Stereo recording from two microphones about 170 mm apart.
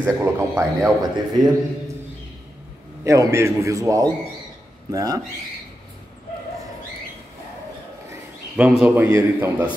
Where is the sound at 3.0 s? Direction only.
15° right (ahead or behind).